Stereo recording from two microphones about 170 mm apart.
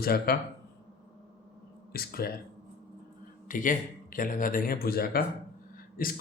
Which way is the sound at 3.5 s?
50° left (ahead or behind).